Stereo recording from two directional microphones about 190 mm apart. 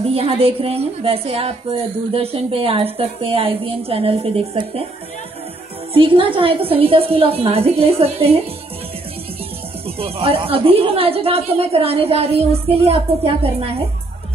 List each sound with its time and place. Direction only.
0.0 s a woman's voice: 30° right (ahead or behind)
5.9 s a woman's voice: 30° right (ahead or behind)
9.8 s a woman's voice: 30° right (ahead or behind)